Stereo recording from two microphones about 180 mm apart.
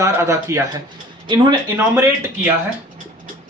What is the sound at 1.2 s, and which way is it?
Speech, 25° right (ahead or behind).